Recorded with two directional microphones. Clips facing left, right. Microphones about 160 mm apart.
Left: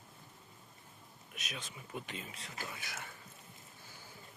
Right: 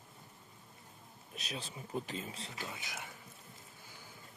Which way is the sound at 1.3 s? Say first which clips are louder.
Right 3 dB; 35° right (ahead or behind).